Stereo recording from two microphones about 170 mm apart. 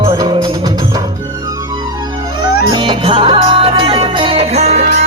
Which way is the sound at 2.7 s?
30° right (ahead or behind).